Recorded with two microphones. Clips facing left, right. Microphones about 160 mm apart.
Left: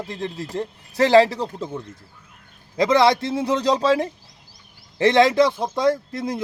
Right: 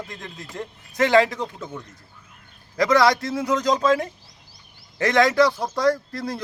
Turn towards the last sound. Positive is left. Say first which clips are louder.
# left 1 dB
turn(degrees=20)  # may be behind; listen again after turning